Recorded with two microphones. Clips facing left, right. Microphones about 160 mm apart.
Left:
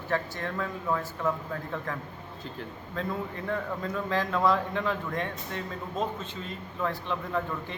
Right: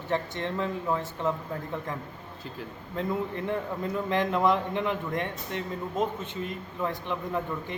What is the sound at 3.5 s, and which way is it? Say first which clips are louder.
A man's voice: right 1 dB; 20° right (ahead or behind).